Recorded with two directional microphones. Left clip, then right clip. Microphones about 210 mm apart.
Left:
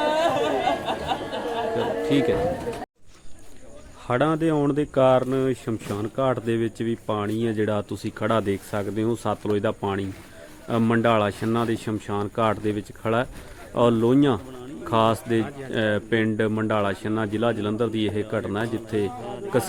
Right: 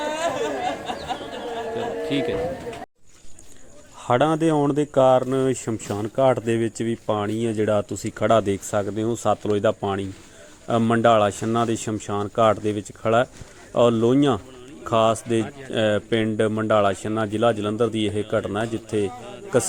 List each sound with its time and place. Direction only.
0.0 s a sound: 45° right (ahead or behind)
2.0 s a man's voice: centre (ahead or behind)
4.0 s speech: 15° right (ahead or behind)